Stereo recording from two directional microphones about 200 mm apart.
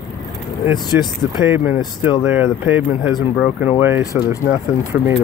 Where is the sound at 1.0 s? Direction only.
5° right (ahead or behind).